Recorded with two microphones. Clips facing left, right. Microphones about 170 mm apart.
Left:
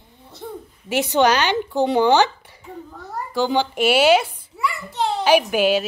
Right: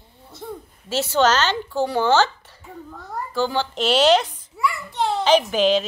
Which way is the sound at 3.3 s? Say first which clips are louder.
Left 3 dB; 15° left (ahead or behind).